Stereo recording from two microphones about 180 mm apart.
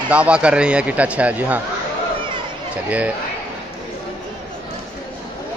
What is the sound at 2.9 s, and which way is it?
Speech, 10° right (ahead or behind).